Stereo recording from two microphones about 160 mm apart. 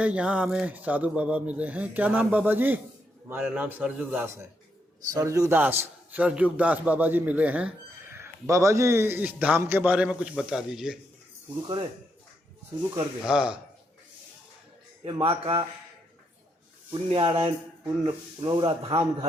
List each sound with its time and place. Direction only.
0.0 s a man's voice: 5° right (ahead or behind)
13.2 s speech: 5° right (ahead or behind)
15.0 s speech: 35° right (ahead or behind)
16.9 s speech: 35° right (ahead or behind)